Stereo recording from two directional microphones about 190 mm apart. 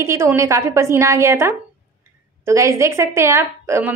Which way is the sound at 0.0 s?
15° right (ahead or behind).